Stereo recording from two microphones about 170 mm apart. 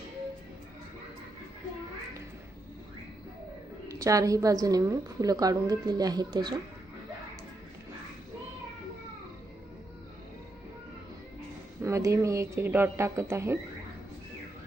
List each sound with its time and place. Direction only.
3.8 s a woman's voice: 20° right (ahead or behind)
11.8 s speech: 15° right (ahead or behind)